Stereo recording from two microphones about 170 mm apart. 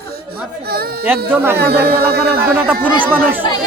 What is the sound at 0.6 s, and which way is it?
Speech, 65° right (ahead or behind).